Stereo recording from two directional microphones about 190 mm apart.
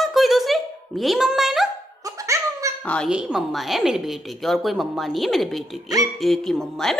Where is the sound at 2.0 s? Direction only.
15° right (ahead or behind).